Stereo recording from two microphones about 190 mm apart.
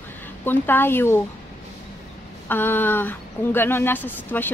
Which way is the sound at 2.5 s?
10° left (ahead or behind).